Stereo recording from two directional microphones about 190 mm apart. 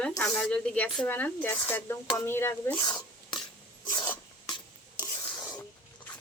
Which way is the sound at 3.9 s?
25° left (ahead or behind).